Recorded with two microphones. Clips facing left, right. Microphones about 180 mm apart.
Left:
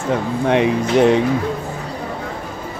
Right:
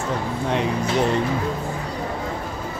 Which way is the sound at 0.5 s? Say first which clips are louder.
Left 7 dB; 70° left (ahead or behind).